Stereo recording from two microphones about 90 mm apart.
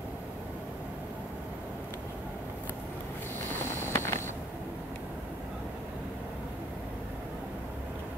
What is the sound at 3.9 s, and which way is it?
Vehicle, 30° left (ahead or behind).